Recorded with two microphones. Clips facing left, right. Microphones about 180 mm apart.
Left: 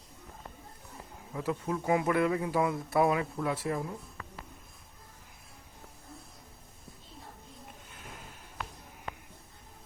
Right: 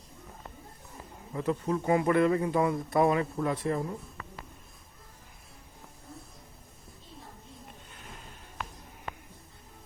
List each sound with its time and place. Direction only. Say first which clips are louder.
1.3 s speech: right 3 dB; 5° left (ahead or behind)